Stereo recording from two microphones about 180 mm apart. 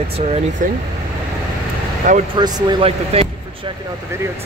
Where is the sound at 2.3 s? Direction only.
25° right (ahead or behind).